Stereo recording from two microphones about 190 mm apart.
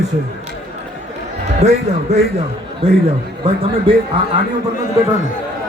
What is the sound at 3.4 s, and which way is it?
Speech, 30° right (ahead or behind).